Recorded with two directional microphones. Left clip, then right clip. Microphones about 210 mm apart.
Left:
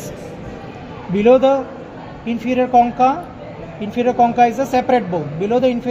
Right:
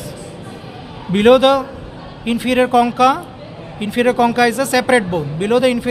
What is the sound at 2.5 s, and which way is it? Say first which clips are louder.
Speech: right 1 dB; 90° right.